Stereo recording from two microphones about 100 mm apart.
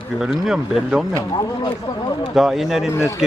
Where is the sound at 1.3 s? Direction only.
45° left (ahead or behind).